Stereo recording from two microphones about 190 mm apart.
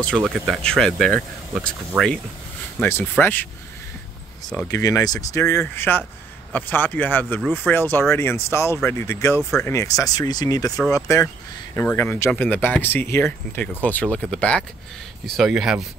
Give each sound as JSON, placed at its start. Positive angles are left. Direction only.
{"t": 0.2, "sound": "speech", "side_deg": 0}
{"t": 4.6, "sound": "speech", "side_deg": 15}
{"t": 9.4, "sound": "speech", "side_deg": 0}
{"t": 9.7, "sound": "speech", "side_deg": 15}
{"t": 11.7, "sound": "speech", "side_deg": 10}